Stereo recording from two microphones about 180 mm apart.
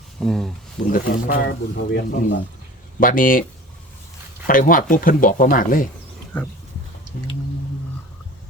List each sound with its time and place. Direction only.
0.2 s speech: 5° left (ahead or behind)
0.9 s speech: 60° left (ahead or behind)
3.0 s speech: 50° left (ahead or behind)
4.4 s speech: 50° left (ahead or behind)